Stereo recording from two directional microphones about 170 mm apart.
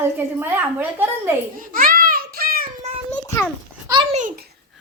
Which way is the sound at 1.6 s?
55° right (ahead or behind).